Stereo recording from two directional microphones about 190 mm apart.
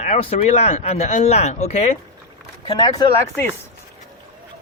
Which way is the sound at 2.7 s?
20° left (ahead or behind).